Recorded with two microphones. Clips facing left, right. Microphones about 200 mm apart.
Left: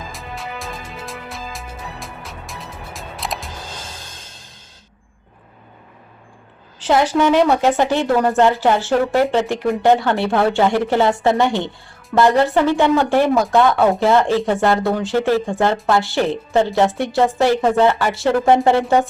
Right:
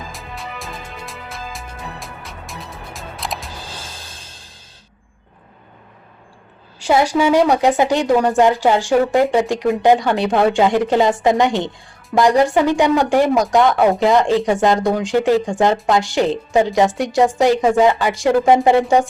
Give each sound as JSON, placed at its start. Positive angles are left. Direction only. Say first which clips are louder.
{"t": 0.1, "sound": "music", "louder": "left 1 dB", "side_deg": 0}
{"t": 6.7, "sound": "speech", "louder": "even", "side_deg": -10}